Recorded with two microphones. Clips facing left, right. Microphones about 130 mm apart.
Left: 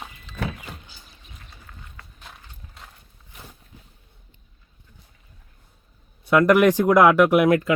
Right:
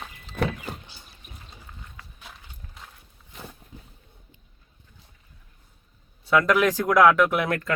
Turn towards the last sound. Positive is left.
turn(degrees=15)  # may be behind; listen again after turning